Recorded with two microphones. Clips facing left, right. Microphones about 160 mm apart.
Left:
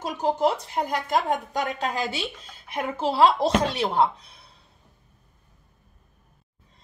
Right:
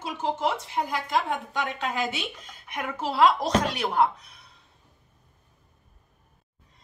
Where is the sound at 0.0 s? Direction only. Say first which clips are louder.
Left 4 dB; 40° left (ahead or behind).